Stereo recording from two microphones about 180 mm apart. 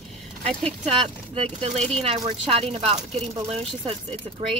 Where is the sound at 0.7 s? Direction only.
35° right (ahead or behind).